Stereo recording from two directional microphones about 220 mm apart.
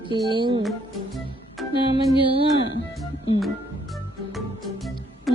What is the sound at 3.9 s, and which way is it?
Music, centre (ahead or behind).